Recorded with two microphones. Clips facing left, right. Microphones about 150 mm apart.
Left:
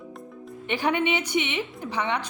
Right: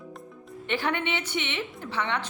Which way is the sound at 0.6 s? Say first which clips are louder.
Left 4 dB; 15° left (ahead or behind).